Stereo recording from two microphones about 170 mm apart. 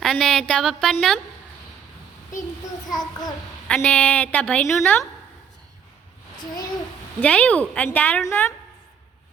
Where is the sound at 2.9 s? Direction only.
25° left (ahead or behind).